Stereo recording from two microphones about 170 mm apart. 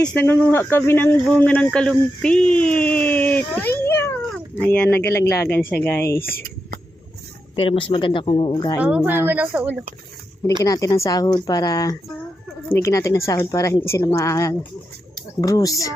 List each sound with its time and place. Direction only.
0.0 s speech: 10° left (ahead or behind)
3.8 s a sound: 15° left (ahead or behind)
4.6 s speech: 10° left (ahead or behind)
7.5 s speech: 30° left (ahead or behind)
8.8 s speech: 5° right (ahead or behind)
10.6 s speech: 20° left (ahead or behind)